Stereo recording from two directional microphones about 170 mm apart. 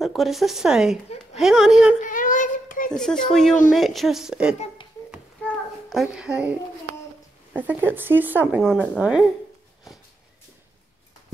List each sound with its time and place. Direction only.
0.0 s speech: centre (ahead or behind)
2.0 s a sound: 50° left (ahead or behind)
2.9 s speech: 5° left (ahead or behind)
5.9 s speech: centre (ahead or behind)
7.5 s speech: 10° right (ahead or behind)
8.7 s speech: 5° left (ahead or behind)